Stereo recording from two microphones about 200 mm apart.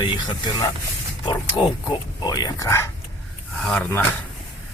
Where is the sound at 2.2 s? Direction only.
20° left (ahead or behind).